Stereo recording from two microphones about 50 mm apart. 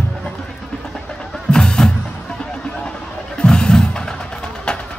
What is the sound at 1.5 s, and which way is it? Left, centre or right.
Music, centre.